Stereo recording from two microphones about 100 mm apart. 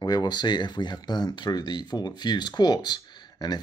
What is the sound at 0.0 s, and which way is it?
Speech, 40° left (ahead or behind).